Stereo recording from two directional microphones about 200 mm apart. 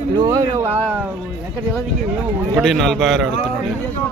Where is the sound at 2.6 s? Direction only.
Centre (ahead or behind).